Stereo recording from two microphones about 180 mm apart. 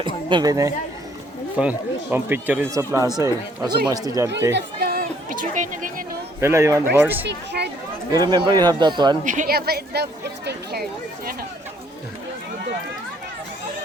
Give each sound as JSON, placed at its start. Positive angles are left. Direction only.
{"t": 0.0, "sound": "speech", "side_deg": -25}
{"t": 1.5, "sound": "speech", "side_deg": -10}
{"t": 4.5, "sound": "speech", "side_deg": -60}
{"t": 6.4, "sound": "speech", "side_deg": -15}
{"t": 7.3, "sound": "speech", "side_deg": -70}
{"t": 8.1, "sound": "speech", "side_deg": -25}
{"t": 9.2, "sound": "speech", "side_deg": -45}